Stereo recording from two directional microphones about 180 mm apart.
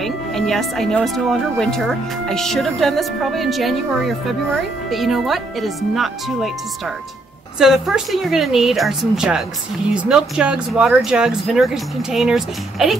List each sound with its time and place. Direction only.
0.0 s speech: centre (ahead or behind)
4.9 s speech: centre (ahead or behind)
7.5 s speech: 5° right (ahead or behind)